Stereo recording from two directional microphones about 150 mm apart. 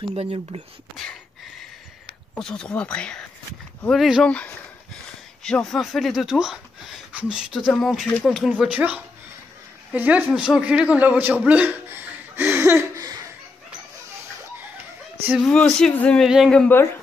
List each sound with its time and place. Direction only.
0.1 s speech: 40° right (ahead or behind)
2.3 s speech: 5° left (ahead or behind)
8.5 s a man's voice: 10° right (ahead or behind)
15.2 s speech: 5° right (ahead or behind)
15.5 s speech: 10° left (ahead or behind)